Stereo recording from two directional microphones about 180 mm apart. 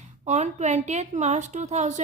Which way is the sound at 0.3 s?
40° right (ahead or behind).